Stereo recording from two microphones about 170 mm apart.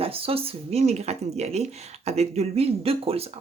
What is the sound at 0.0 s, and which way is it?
Speech, 35° right (ahead or behind).